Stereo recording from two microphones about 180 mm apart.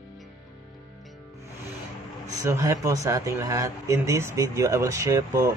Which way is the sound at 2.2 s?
20° right (ahead or behind).